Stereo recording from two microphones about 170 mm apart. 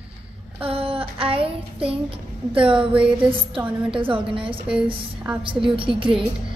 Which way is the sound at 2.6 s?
5° right (ahead or behind).